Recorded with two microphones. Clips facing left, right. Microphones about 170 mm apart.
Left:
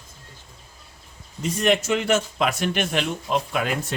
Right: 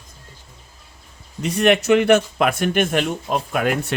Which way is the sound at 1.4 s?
65° right (ahead or behind).